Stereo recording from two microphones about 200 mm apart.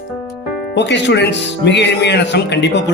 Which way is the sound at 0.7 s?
60° left (ahead or behind).